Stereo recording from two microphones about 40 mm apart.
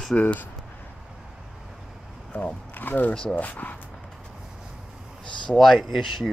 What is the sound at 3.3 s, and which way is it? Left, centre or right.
Speech, left.